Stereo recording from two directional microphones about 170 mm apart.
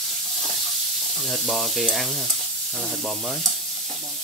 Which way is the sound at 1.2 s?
Centre (ahead or behind).